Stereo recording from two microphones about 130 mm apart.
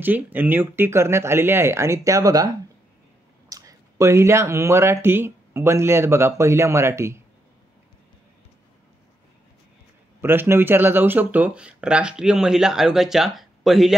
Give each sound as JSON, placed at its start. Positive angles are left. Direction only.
{"t": 0.0, "sound": "speech", "side_deg": -15}
{"t": 10.2, "sound": "speech", "side_deg": -20}